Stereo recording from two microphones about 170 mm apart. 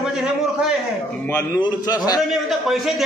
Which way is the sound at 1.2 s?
10° left (ahead or behind).